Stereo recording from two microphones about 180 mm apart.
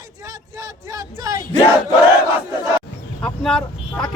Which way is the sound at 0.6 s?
20° right (ahead or behind).